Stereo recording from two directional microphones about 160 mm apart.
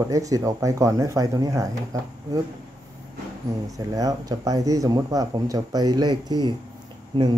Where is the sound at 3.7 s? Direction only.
20° right (ahead or behind).